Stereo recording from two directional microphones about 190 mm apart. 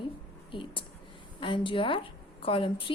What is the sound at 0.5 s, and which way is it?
A woman's voice, 25° left (ahead or behind).